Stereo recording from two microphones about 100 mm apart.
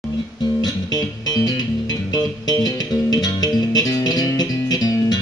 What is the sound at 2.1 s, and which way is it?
Music, 45° left (ahead or behind).